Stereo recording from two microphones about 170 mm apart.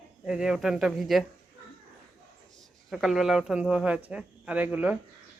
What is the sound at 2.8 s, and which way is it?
Speech, centre (ahead or behind).